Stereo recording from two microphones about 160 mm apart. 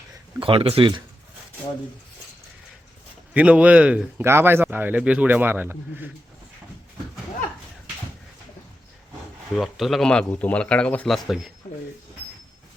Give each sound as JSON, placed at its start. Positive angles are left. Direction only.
{"t": 0.3, "sound": "speech", "side_deg": -35}
{"t": 3.3, "sound": "speech", "side_deg": -10}
{"t": 9.6, "sound": "speech", "side_deg": 0}